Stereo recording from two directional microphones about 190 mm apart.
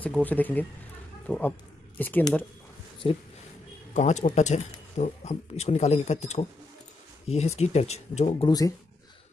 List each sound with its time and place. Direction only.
0.0 s speech: 10° left (ahead or behind)
3.0 s speech: 25° left (ahead or behind)
3.9 s speech: 40° left (ahead or behind)
8.5 s speech: 20° left (ahead or behind)